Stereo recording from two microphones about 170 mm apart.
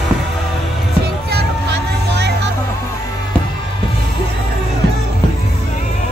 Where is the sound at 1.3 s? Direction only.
80° right.